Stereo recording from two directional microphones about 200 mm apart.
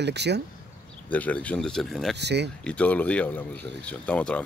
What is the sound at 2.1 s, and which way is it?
Speech, 60° right (ahead or behind).